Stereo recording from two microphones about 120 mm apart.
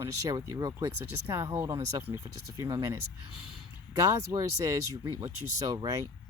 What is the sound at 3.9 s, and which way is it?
Speech, 30° right (ahead or behind).